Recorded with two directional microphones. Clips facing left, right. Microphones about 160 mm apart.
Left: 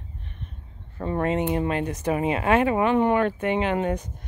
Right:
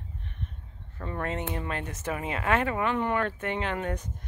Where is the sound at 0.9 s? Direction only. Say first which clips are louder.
Left 8 dB; 25° left (ahead or behind).